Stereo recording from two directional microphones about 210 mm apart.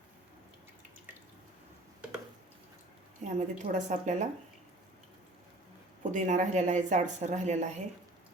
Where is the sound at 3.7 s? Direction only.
35° right (ahead or behind).